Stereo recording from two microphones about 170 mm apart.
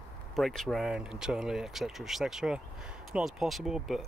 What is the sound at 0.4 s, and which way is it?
Speech, centre (ahead or behind).